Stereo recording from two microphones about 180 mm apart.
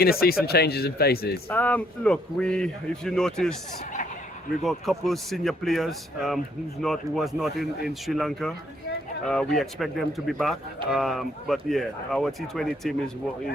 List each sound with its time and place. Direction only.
0.0 s speech: 60° left (ahead or behind)
1.5 s speech: 10° left (ahead or behind)
4.6 s speech: centre (ahead or behind)